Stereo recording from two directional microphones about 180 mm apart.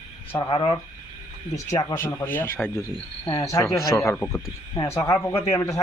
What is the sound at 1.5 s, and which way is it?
Speech, 20° left (ahead or behind).